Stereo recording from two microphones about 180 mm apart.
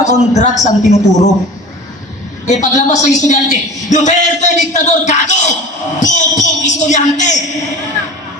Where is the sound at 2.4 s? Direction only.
40° left (ahead or behind).